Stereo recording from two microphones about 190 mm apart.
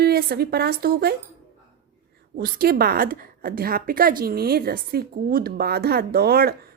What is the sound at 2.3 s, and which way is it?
A woman's voice, 50° right (ahead or behind).